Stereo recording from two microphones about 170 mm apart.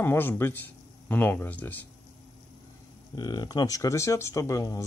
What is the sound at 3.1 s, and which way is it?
Speech, 25° left (ahead or behind).